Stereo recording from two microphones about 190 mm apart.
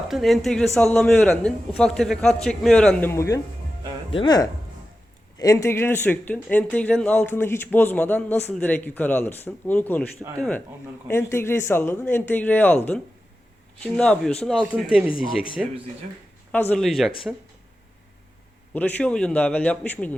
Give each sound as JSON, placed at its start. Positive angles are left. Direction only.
{"t": 0.1, "sound": "speech", "side_deg": 0}
{"t": 10.2, "sound": "speech", "side_deg": -15}
{"t": 11.1, "sound": "speech", "side_deg": 15}
{"t": 16.5, "sound": "speech", "side_deg": 10}
{"t": 18.7, "sound": "speech", "side_deg": 10}